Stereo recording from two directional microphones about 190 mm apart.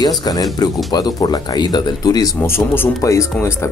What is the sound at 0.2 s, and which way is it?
Speech, 20° left (ahead or behind).